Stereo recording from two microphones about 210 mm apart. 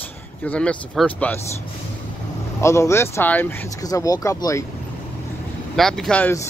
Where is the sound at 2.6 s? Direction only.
15° left (ahead or behind).